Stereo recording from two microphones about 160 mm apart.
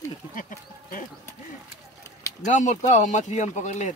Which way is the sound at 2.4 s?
50° left (ahead or behind).